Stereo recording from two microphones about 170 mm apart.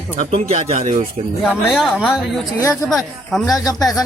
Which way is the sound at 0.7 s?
50° right (ahead or behind).